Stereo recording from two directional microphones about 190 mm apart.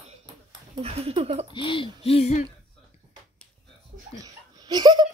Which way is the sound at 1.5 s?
25° left (ahead or behind).